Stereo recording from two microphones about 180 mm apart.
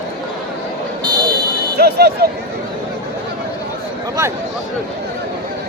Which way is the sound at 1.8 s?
60° right (ahead or behind).